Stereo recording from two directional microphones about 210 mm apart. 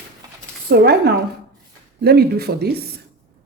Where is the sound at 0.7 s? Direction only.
50° right (ahead or behind).